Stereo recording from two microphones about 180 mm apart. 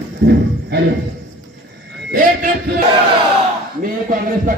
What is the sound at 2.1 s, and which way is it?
Music, 55° right (ahead or behind).